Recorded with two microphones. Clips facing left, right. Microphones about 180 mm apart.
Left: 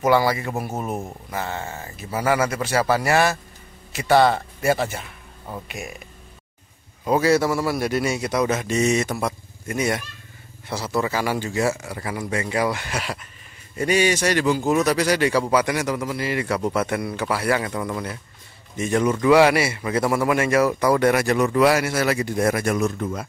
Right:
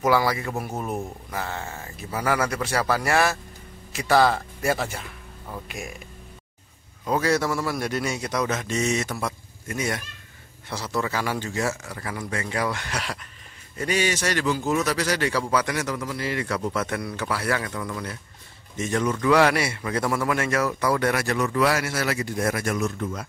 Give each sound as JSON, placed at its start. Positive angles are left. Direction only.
{"t": 0.0, "sound": "speech", "side_deg": 0}
{"t": 7.1, "sound": "a man's voice", "side_deg": 5}
{"t": 22.8, "sound": "speech", "side_deg": 35}